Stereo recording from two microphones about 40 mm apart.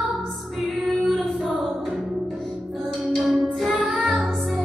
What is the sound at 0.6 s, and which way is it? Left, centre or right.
Music, centre.